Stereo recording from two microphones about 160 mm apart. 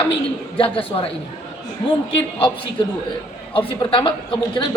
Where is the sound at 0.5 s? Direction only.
35° left (ahead or behind).